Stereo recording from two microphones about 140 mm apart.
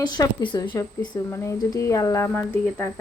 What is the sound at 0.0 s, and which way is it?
Speech, 30° left (ahead or behind).